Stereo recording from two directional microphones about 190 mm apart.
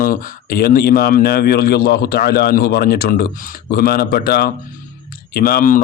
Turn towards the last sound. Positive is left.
turn(degrees=45)  # may be behind; listen again after turning